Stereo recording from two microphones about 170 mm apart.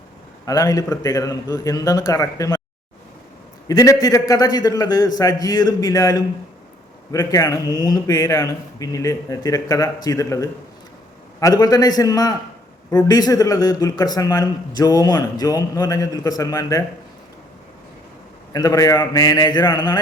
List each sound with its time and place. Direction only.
0.4 s a man's voice: 20° left (ahead or behind)
3.7 s a man's voice: 20° left (ahead or behind)
18.5 s a man's voice: 20° left (ahead or behind)